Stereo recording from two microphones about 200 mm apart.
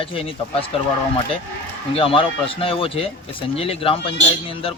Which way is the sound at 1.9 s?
25° left (ahead or behind).